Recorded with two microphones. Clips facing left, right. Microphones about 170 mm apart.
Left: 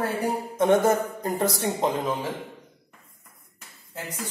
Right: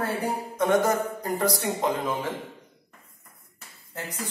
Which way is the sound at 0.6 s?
25° left (ahead or behind).